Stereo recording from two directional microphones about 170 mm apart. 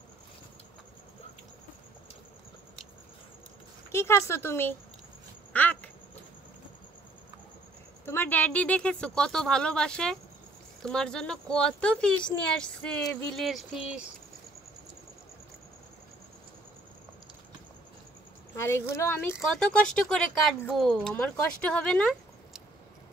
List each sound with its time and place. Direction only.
3.9 s speech: 15° left (ahead or behind)
5.5 s a sound: 10° left (ahead or behind)
8.0 s speech: 15° left (ahead or behind); by 14.1 s 5° right (ahead or behind)
18.6 s speech: 15° left (ahead or behind)